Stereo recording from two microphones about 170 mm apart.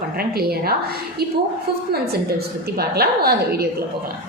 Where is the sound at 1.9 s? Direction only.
65° right (ahead or behind).